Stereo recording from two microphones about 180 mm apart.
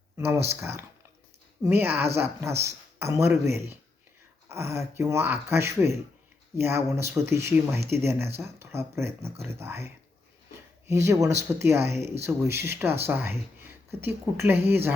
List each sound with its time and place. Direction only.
0.6 s speech: 15° right (ahead or behind)